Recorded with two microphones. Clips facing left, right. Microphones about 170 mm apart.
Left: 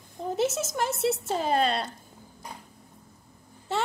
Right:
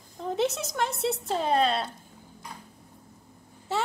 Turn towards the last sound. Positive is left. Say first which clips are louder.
# even
turn(degrees=-5)  # may be behind; listen again after turning